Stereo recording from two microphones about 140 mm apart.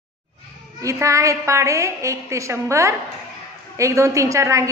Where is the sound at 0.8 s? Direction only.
20° right (ahead or behind).